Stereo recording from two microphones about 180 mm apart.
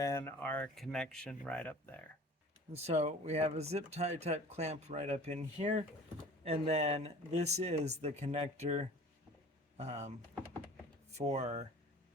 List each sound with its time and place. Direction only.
0.0 s speech: 15° left (ahead or behind)
2.7 s speech: 35° right (ahead or behind)
11.3 s speech: 35° right (ahead or behind)